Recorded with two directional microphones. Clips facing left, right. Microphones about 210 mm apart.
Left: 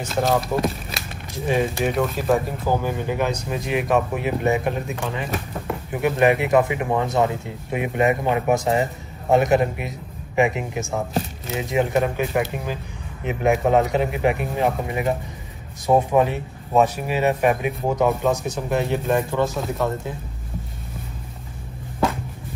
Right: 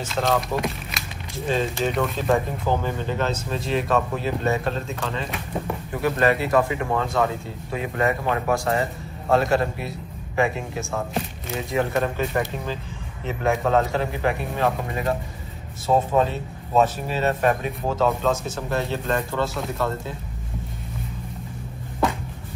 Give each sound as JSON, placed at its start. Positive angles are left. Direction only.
{"t": 0.2, "sound": "speech", "side_deg": 5}
{"t": 1.3, "sound": "speech", "side_deg": 15}
{"t": 12.3, "sound": "speech", "side_deg": 0}
{"t": 13.2, "sound": "speech", "side_deg": 15}